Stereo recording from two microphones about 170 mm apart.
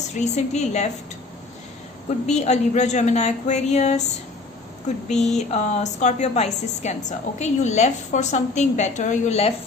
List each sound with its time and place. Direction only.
0.1 s a woman's voice: 40° left (ahead or behind)
2.0 s a woman's voice: 40° left (ahead or behind)
5.0 s a woman's voice: 40° left (ahead or behind)